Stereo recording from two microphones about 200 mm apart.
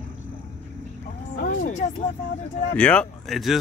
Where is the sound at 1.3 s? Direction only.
40° left (ahead or behind).